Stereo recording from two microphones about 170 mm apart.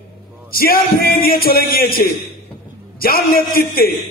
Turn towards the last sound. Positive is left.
turn(degrees=60)  # may be behind; listen again after turning